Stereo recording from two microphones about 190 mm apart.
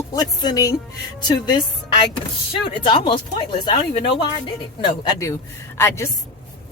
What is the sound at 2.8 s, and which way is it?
A woman's voice, 25° left (ahead or behind).